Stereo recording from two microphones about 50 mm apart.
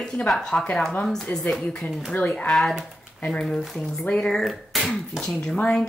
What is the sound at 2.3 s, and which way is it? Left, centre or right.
Speech, centre.